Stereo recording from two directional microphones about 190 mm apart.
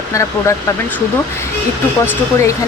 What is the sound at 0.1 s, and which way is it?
Speech, 15° left (ahead or behind).